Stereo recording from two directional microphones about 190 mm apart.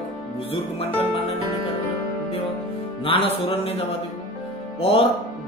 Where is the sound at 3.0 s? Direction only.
30° left (ahead or behind).